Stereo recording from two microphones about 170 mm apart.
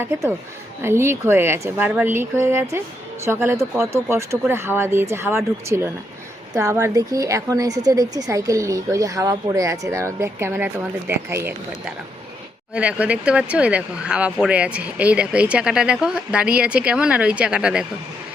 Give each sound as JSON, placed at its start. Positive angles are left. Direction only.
{"t": 0.0, "sound": "a woman's voice", "side_deg": -10}